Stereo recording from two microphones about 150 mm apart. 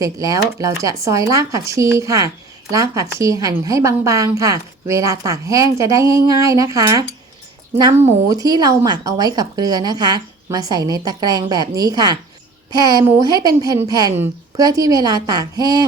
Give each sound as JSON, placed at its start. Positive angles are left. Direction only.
{"t": 0.0, "sound": "a woman's voice", "side_deg": -20}